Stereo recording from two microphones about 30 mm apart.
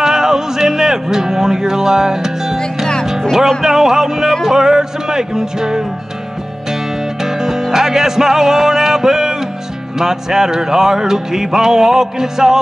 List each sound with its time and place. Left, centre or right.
0.0 s music: centre
3.6 s music: centre